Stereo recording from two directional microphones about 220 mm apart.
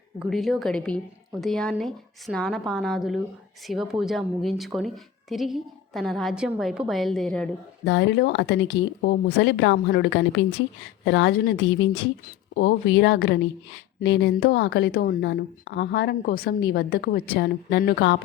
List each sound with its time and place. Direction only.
0.2 s a woman's voice: centre (ahead or behind)
7.9 s a woman's voice: 55° left (ahead or behind)